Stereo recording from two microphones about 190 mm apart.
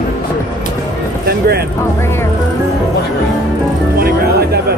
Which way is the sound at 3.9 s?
55° right (ahead or behind).